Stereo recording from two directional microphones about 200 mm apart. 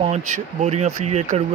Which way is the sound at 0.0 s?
35° right (ahead or behind).